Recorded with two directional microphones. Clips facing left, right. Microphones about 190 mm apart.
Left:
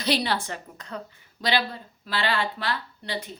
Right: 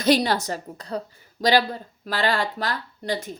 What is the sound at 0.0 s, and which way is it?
A woman's voice, 45° right (ahead or behind).